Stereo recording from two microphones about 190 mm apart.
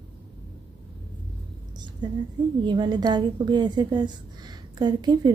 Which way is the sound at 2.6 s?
25° right (ahead or behind).